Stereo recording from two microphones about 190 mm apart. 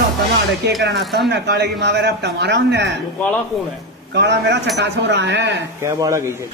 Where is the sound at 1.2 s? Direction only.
60° right (ahead or behind).